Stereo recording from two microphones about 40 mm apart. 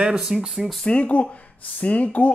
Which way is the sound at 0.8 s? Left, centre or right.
Left.